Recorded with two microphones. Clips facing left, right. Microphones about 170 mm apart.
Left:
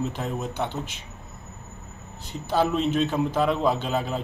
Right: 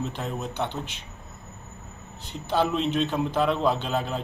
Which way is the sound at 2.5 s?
5° left (ahead or behind).